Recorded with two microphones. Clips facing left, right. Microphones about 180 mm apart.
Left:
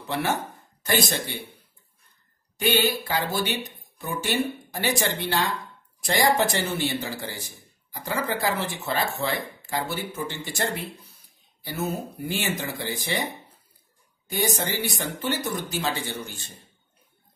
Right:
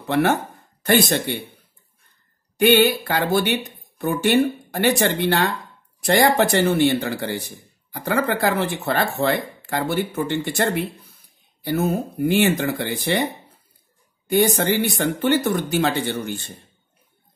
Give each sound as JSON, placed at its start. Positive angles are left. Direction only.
{"t": 0.0, "sound": "a man's voice", "side_deg": -60}
{"t": 2.5, "sound": "a man's voice", "side_deg": -65}